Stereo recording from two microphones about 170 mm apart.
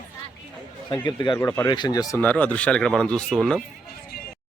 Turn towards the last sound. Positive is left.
turn(degrees=0)  # may be behind; listen again after turning